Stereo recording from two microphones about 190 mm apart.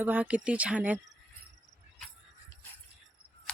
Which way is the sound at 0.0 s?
10° right (ahead or behind).